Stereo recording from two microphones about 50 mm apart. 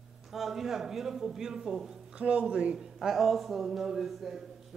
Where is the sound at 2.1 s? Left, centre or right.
Right.